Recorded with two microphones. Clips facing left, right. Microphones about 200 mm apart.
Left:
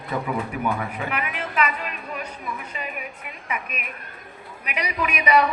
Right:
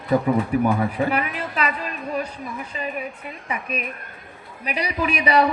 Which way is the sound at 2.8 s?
35° right (ahead or behind).